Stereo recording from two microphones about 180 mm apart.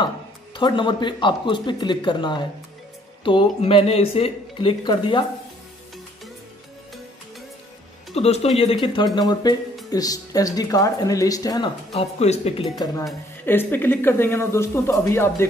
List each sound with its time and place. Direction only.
0.6 s speech: 25° left (ahead or behind)
8.1 s speech: 35° left (ahead or behind)
11.9 s speech: 35° left (ahead or behind)
12.7 s speech: 20° left (ahead or behind)